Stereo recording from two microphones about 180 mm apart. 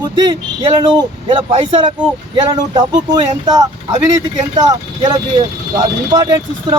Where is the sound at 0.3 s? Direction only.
25° right (ahead or behind).